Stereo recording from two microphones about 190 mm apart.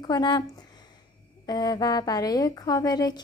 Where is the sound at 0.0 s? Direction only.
20° left (ahead or behind).